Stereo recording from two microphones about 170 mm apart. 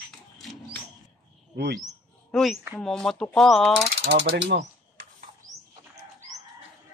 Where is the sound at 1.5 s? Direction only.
75° right (ahead or behind).